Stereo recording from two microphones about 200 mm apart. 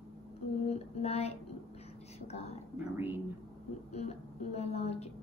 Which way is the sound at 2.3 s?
30° left (ahead or behind).